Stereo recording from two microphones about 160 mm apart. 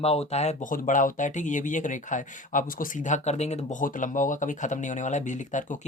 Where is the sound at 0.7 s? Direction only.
55° left (ahead or behind).